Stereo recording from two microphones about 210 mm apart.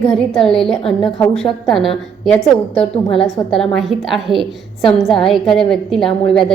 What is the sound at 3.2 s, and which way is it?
A woman's voice, centre (ahead or behind).